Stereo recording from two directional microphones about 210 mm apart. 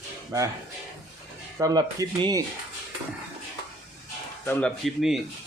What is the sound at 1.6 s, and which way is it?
Speech, 15° right (ahead or behind).